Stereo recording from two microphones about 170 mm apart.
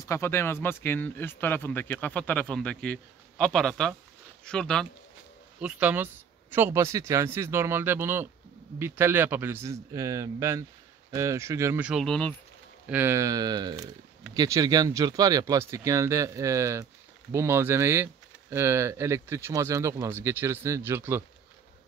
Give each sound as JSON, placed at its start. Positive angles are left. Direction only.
{"t": 0.0, "sound": "speech", "side_deg": 15}
{"t": 5.6, "sound": "speech", "side_deg": -5}
{"t": 12.8, "sound": "speech", "side_deg": -10}